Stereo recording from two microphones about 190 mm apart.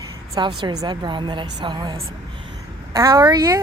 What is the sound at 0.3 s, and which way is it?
A woman's voice, 25° right (ahead or behind).